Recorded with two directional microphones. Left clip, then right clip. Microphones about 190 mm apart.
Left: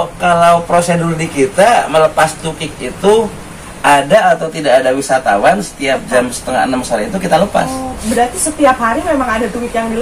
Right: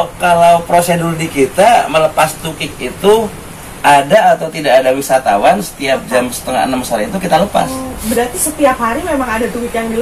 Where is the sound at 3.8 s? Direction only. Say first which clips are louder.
Right 1 dB; 15° left (ahead or behind).